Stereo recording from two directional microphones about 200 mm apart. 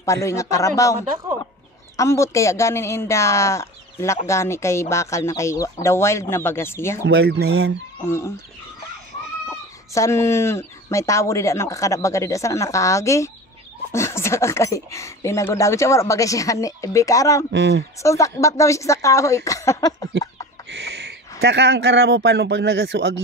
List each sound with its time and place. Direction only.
0.0 s speech: 15° left (ahead or behind)
2.0 s speech: 15° left (ahead or behind)
7.1 s speech: 55° right (ahead or behind)
9.9 s speech: 15° left (ahead or behind)
17.5 s speech: 60° right (ahead or behind)
18.0 s speech: 15° left (ahead or behind)
20.7 s speech: 60° right (ahead or behind)